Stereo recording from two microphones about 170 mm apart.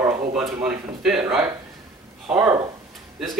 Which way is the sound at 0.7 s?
5° right (ahead or behind).